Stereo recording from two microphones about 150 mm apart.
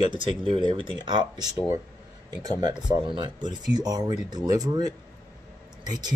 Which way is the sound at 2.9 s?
30° right (ahead or behind).